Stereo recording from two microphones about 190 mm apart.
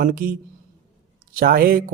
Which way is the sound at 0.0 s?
50° right (ahead or behind).